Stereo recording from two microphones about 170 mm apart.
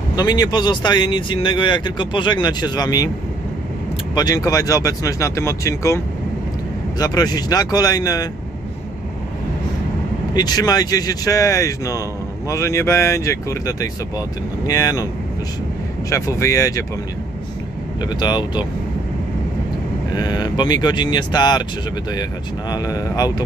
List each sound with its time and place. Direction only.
0.1 s speech: 25° left (ahead or behind)
4.1 s speech: 25° left (ahead or behind)
7.0 s speech: 20° left (ahead or behind)
10.3 s speech: 25° left (ahead or behind)
16.1 s speech: 20° left (ahead or behind)
18.2 s speech: 25° left (ahead or behind)
20.1 s speech: 25° left (ahead or behind)
22.7 s speech: 20° left (ahead or behind)